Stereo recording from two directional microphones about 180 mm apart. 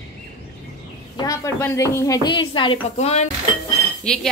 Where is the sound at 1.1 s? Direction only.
20° left (ahead or behind); by 3.3 s 35° left (ahead or behind).